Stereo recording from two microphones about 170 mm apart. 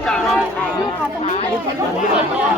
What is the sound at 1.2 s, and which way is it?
Speech, 35° left (ahead or behind).